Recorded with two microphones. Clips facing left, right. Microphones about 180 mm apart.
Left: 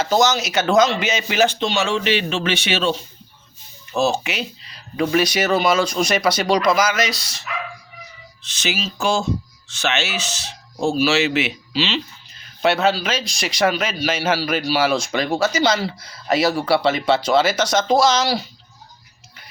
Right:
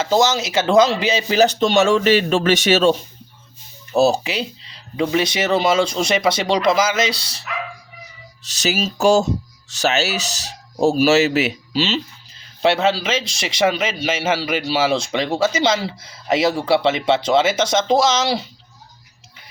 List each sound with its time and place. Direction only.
0.0 s a man's voice: 25° right (ahead or behind)
8.4 s speech: 40° right (ahead or behind)
12.6 s a man's voice: 25° right (ahead or behind)